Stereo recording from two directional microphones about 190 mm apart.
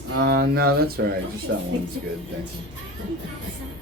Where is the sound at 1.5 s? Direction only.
65° right (ahead or behind).